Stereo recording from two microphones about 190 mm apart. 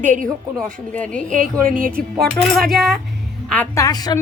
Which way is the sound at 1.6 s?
45° right (ahead or behind).